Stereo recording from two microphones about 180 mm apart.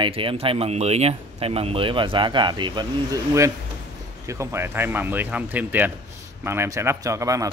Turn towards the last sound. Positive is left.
turn(degrees=-20)  # may be behind; listen again after turning